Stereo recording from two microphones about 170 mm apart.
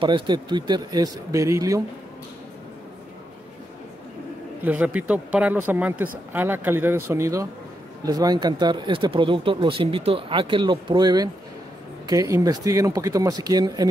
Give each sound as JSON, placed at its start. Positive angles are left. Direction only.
{"t": 0.0, "sound": "speech", "side_deg": -30}
{"t": 4.6, "sound": "speech", "side_deg": -10}